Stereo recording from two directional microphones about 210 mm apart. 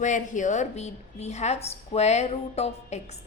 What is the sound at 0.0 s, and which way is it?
A woman's voice, 35° left (ahead or behind).